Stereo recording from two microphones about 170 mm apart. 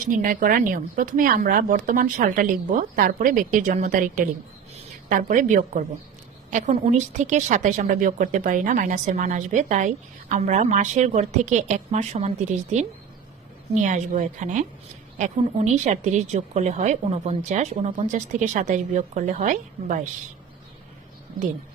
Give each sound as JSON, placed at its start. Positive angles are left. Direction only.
{"t": 0.1, "sound": "a woman's voice", "side_deg": -55}